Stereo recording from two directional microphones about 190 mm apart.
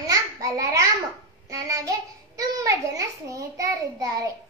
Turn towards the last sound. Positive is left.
turn(degrees=-15)  # may be behind; listen again after turning